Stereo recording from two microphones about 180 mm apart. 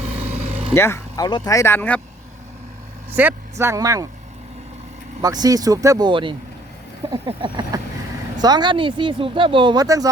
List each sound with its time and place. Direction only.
0.7 s speech: 15° left (ahead or behind)
3.2 s speech: 10° right (ahead or behind)
5.2 s speech: 20° right (ahead or behind)